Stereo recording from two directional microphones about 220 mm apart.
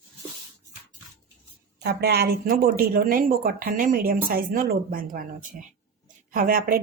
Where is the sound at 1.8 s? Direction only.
50° right (ahead or behind).